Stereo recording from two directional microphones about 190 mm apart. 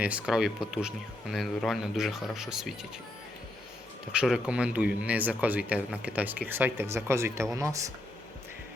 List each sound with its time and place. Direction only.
0.0 s speech: 5° right (ahead or behind)
4.1 s speech: 5° right (ahead or behind)